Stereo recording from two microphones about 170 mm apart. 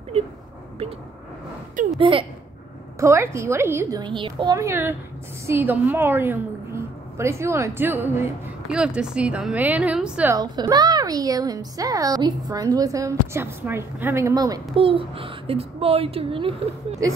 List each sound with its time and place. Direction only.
0.1 s a child's voice: 35° right (ahead or behind)
2.0 s speech: 30° right (ahead or behind)
3.0 s a woman's voice: 15° right (ahead or behind)
4.0 s a woman's voice: 30° right (ahead or behind)
4.6 s a woman's voice: 15° right (ahead or behind)
10.3 s a woman's voice: 25° right (ahead or behind)
14.8 s a child's voice: 30° right (ahead or behind)